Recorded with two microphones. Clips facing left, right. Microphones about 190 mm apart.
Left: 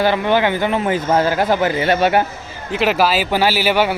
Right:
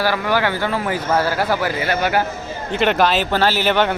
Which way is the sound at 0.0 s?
20° left (ahead or behind).